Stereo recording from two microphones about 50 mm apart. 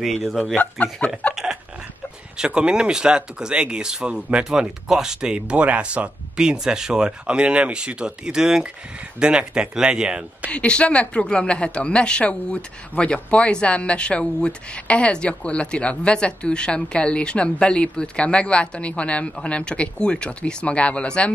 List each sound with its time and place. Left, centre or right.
0.0 s speech: centre
1.3 s chuckle: centre
2.3 s speech: centre
4.5 s speech: centre
10.5 s speech: left